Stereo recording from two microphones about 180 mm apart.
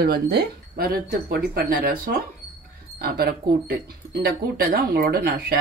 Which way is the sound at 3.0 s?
60° right (ahead or behind).